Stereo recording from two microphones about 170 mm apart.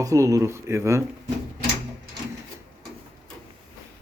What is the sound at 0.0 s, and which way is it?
Speech, 20° right (ahead or behind).